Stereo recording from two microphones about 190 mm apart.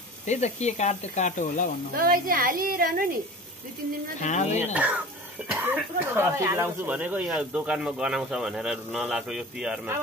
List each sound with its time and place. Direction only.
0.3 s speech: 35° left (ahead or behind)
2.0 s a woman's voice: 50° right (ahead or behind)
4.2 s speech: 40° left (ahead or behind)
4.7 s speech: 5° right (ahead or behind)